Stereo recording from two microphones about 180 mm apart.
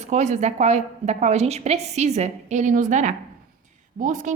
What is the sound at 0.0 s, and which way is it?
A woman's voice, 40° right (ahead or behind).